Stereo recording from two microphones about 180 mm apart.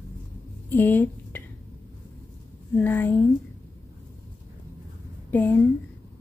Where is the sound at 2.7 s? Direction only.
10° left (ahead or behind).